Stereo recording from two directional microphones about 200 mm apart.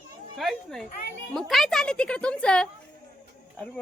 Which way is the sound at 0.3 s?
Centre (ahead or behind).